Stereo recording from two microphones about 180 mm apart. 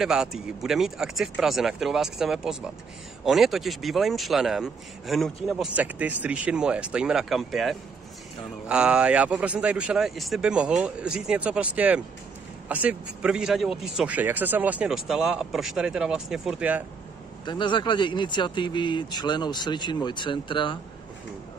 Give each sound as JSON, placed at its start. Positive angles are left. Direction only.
{"t": 0.0, "sound": "a man's voice", "side_deg": -5}
{"t": 17.5, "sound": "a man's voice", "side_deg": 25}